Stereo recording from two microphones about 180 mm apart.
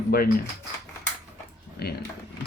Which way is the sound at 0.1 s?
55° left (ahead or behind).